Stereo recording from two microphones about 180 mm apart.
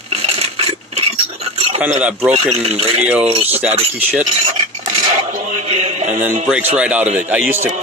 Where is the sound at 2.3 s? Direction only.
35° right (ahead or behind).